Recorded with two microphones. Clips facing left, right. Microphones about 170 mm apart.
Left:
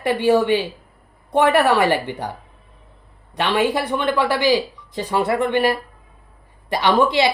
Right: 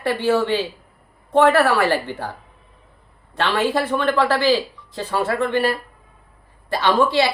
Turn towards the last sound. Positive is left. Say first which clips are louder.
# left 1 dB
turn(degrees=15)  # may be behind; listen again after turning